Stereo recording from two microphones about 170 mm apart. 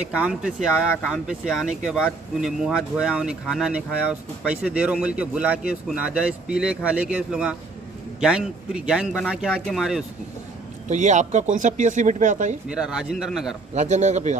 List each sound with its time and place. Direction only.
0.1 s speech: 5° right (ahead or behind)
10.9 s speech: 45° right (ahead or behind)
12.6 s speech: 5° right (ahead or behind)
13.7 s speech: 45° right (ahead or behind)